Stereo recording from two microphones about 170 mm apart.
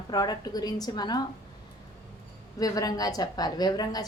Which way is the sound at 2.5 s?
20° left (ahead or behind).